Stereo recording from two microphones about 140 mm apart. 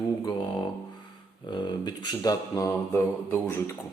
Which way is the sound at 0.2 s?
30° left (ahead or behind).